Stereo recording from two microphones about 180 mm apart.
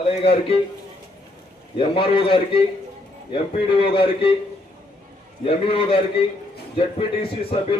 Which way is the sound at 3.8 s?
30° left (ahead or behind).